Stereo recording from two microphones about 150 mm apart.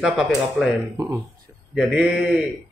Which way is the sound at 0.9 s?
25° right (ahead or behind).